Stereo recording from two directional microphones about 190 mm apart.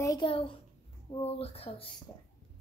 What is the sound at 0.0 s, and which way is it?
A child's voice, 20° left (ahead or behind).